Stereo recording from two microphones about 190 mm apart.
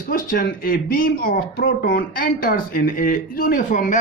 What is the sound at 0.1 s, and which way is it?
A man's voice, 45° left (ahead or behind).